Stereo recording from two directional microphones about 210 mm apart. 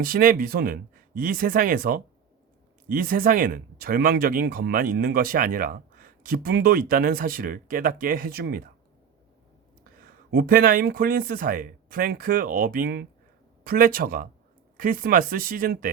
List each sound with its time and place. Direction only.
0.0 s speech: 45° right (ahead or behind)
9.8 s speech: 45° right (ahead or behind)